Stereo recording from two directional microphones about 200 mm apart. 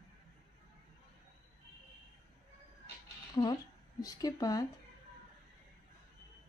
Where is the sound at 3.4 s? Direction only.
20° left (ahead or behind).